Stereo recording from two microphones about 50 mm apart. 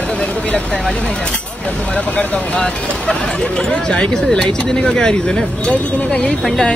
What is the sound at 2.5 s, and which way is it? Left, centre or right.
Speech, left.